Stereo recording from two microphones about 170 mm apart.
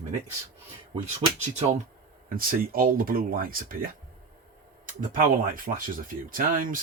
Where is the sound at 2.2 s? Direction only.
60° right (ahead or behind).